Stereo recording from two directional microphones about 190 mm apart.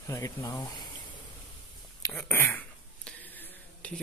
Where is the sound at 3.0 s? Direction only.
5° left (ahead or behind).